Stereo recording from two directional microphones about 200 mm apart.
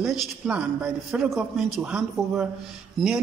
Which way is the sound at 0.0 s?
5° right (ahead or behind).